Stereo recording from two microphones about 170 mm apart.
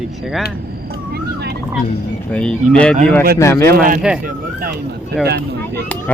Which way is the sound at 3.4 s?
15° left (ahead or behind).